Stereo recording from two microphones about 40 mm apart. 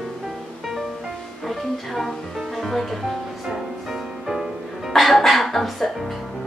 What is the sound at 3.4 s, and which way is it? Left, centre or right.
Music, centre.